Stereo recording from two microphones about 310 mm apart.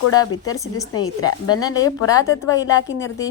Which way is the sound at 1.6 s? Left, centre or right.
Centre.